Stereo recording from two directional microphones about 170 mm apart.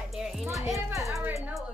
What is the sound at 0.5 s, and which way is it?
Speech, centre (ahead or behind).